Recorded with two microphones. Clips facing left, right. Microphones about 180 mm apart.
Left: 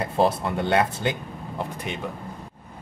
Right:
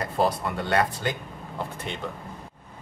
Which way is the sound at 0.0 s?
25° left (ahead or behind).